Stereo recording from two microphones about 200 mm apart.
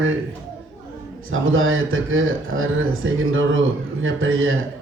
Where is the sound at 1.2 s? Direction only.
90° right.